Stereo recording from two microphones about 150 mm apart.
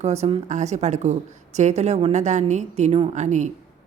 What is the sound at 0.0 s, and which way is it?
Speech, 45° right (ahead or behind).